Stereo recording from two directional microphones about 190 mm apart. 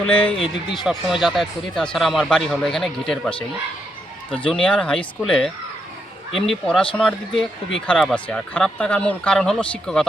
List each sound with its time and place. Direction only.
0.1 s a man's voice: 10° left (ahead or behind)
4.3 s speech: 25° left (ahead or behind)
4.5 s speech: 5° left (ahead or behind)
6.5 s speech: 5° left (ahead or behind)